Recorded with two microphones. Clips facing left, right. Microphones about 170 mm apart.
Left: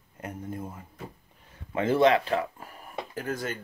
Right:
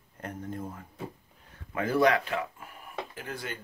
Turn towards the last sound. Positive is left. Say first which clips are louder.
# left 6 dB
turn(degrees=45)  # may be behind; listen again after turning